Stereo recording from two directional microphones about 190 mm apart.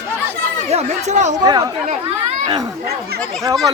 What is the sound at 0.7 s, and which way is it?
Speech, 35° right (ahead or behind).